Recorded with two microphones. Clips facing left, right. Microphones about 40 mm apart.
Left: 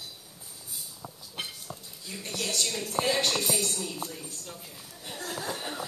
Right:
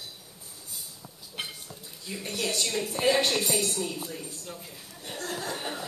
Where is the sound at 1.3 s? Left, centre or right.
Centre.